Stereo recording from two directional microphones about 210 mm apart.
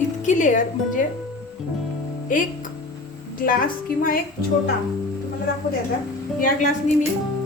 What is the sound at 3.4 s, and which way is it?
Speech, 40° left (ahead or behind).